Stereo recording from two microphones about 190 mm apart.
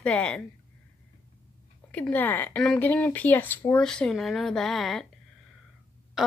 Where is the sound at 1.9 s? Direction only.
10° left (ahead or behind).